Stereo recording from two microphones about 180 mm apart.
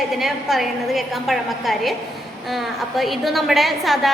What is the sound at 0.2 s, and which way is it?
A woman's voice, centre (ahead or behind).